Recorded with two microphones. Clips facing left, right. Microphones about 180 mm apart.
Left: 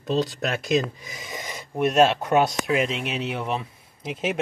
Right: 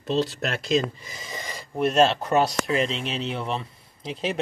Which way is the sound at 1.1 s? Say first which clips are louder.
Left 1 dB; centre (ahead or behind).